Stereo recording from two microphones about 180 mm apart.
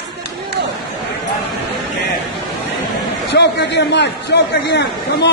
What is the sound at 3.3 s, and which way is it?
A man's voice, 75° left (ahead or behind).